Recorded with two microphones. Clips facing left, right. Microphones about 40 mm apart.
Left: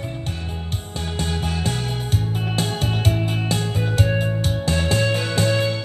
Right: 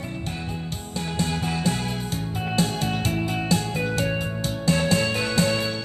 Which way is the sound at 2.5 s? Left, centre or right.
Left.